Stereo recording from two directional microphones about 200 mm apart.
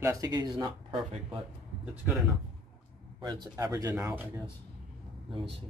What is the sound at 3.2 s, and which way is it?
Speech, 20° right (ahead or behind).